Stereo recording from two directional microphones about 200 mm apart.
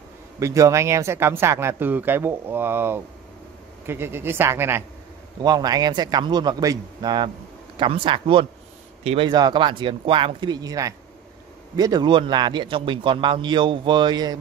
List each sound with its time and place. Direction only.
0.4 s a man's voice: 15° right (ahead or behind)